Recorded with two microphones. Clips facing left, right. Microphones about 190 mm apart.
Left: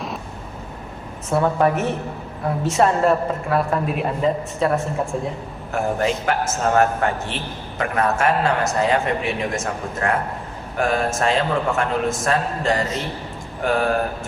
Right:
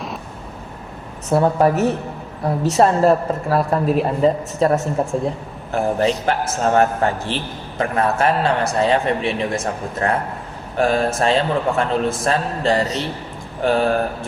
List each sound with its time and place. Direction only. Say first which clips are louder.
1.3 s a man's voice: right 3 dB; 35° right (ahead or behind)